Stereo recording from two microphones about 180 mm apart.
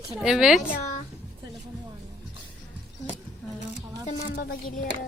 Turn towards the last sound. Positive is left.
turn(degrees=50)  # may be behind; listen again after turning